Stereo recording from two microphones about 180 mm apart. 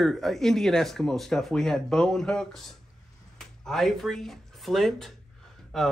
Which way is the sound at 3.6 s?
Centre (ahead or behind).